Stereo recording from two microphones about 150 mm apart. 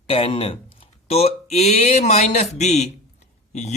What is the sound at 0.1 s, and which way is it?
Speech, 40° left (ahead or behind).